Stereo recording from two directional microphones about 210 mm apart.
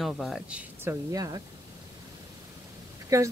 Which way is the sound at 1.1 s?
15° right (ahead or behind).